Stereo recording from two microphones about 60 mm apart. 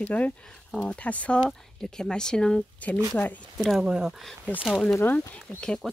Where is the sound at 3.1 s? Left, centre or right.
Left.